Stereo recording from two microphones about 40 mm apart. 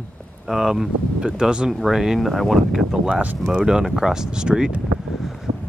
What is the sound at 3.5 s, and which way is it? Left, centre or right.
Speech, centre.